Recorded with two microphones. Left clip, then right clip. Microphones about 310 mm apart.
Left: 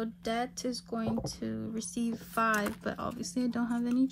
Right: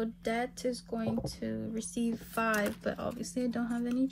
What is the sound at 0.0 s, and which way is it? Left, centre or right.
Speech, centre.